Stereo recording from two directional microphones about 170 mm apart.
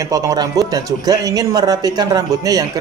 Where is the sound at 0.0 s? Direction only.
20° right (ahead or behind).